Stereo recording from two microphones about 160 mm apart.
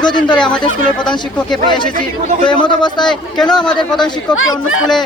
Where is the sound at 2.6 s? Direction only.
30° left (ahead or behind).